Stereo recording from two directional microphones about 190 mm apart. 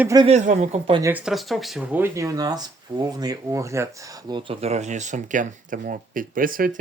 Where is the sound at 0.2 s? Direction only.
35° right (ahead or behind).